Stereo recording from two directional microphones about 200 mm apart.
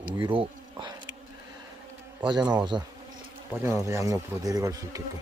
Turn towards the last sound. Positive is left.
turn(degrees=-15)  # may be behind; listen again after turning